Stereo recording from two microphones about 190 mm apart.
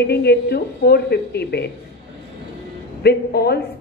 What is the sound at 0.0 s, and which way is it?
A woman's voice, 60° left (ahead or behind).